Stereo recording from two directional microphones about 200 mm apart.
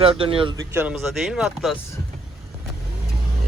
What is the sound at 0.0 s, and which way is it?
Speech, 25° right (ahead or behind).